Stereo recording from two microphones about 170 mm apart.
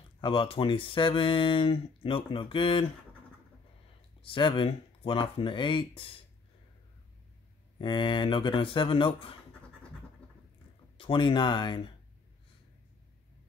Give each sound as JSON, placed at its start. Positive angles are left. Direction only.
{"t": 0.2, "sound": "speech", "side_deg": 30}
{"t": 4.2, "sound": "speech", "side_deg": 30}
{"t": 7.8, "sound": "speech", "side_deg": 30}
{"t": 11.0, "sound": "speech", "side_deg": 30}